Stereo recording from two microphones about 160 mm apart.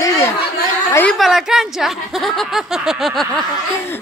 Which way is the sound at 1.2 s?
Centre (ahead or behind).